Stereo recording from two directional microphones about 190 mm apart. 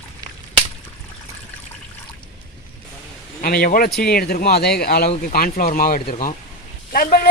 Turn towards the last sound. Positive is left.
turn(degrees=50)  # may be behind; listen again after turning